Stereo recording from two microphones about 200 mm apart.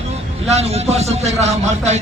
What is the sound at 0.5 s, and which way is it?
A man's voice, 30° right (ahead or behind).